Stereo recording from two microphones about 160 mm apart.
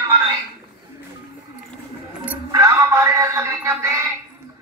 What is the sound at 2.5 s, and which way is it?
Music, 20° right (ahead or behind).